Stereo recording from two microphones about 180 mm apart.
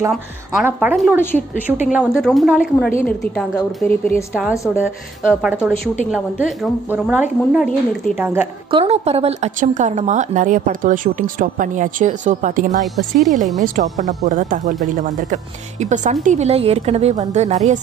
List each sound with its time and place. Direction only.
0.1 s a woman's voice: 5° right (ahead or behind)
4.3 s a woman's voice: 5° right (ahead or behind)
6.9 s speech: 10° right (ahead or behind)
7.6 s a woman's voice: 5° left (ahead or behind)
8.2 s speech: 10° right (ahead or behind)
8.6 s a woman's voice: 30° right (ahead or behind)
12.8 s a woman's voice: centre (ahead or behind)
13.6 s a woman's voice: 45° right (ahead or behind)